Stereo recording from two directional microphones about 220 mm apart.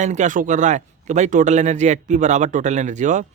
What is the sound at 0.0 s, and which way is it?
A man's voice, 35° right (ahead or behind).